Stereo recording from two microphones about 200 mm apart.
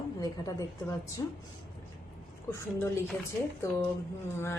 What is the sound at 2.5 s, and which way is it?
Speech, 10° left (ahead or behind).